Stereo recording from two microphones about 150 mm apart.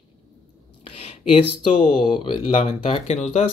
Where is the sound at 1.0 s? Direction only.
40° left (ahead or behind).